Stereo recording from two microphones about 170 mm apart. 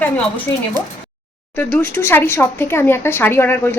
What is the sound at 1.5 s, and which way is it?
Speech, 15° left (ahead or behind).